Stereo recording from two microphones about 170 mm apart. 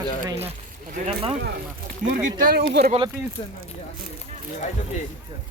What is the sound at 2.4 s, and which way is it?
Speech, 65° right (ahead or behind).